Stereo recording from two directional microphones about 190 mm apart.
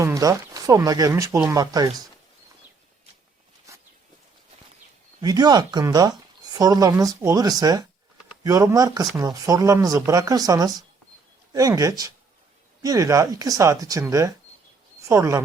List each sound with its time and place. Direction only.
0.0 s speech: 15° right (ahead or behind)
3.7 s walk: 15° right (ahead or behind)
5.2 s speech: 20° right (ahead or behind)